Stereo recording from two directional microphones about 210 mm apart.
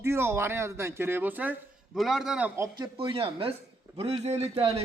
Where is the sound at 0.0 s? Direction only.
10° right (ahead or behind).